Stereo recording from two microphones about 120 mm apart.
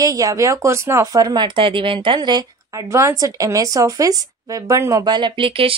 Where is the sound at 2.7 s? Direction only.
25° right (ahead or behind).